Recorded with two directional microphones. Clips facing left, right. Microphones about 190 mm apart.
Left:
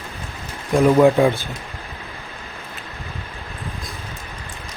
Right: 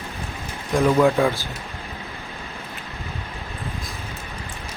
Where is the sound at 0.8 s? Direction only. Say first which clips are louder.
Left 4 dB; 20° left (ahead or behind).